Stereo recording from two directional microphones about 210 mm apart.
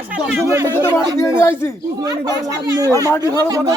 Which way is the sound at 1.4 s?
10° left (ahead or behind).